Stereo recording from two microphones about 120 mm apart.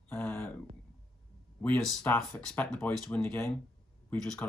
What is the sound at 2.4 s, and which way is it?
Speech, 5° left (ahead or behind).